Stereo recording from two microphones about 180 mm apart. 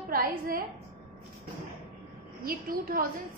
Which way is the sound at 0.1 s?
55° right (ahead or behind).